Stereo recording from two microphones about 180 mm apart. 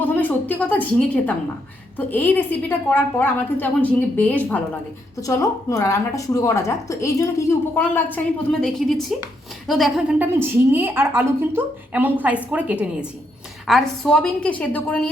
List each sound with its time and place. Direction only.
0.0 s a woman's voice: 10° left (ahead or behind)
5.2 s a woman's voice: 20° left (ahead or behind)